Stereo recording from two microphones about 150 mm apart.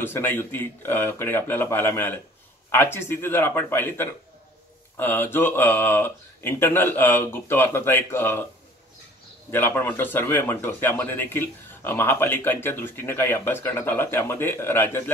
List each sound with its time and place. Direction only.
0.0 s speech: 15° left (ahead or behind)
9.5 s speech: 15° left (ahead or behind)